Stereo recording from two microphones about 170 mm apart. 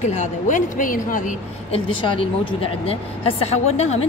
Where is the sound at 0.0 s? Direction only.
45° left (ahead or behind).